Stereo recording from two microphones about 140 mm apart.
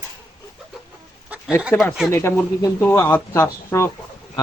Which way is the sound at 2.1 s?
20° left (ahead or behind).